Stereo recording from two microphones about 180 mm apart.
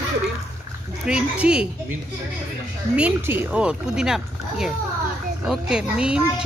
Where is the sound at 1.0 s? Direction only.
5° right (ahead or behind).